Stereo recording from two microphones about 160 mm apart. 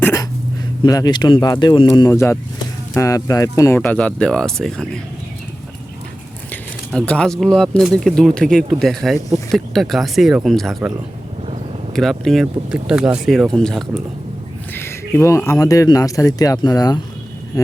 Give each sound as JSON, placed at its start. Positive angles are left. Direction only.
{"t": 0.0, "sound": "dog", "side_deg": 20}
{"t": 0.9, "sound": "speech", "side_deg": 25}
{"t": 3.8, "sound": "speech", "side_deg": 10}
{"t": 6.5, "sound": "speech", "side_deg": 5}
{"t": 11.9, "sound": "speech", "side_deg": 0}
{"t": 14.8, "sound": "speech", "side_deg": 15}